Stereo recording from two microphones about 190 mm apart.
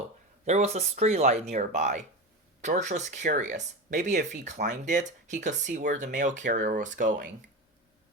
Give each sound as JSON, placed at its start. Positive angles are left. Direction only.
{"t": 0.4, "sound": "speech", "side_deg": -35}